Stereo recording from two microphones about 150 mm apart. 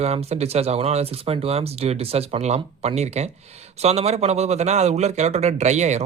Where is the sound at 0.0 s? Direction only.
45° right (ahead or behind).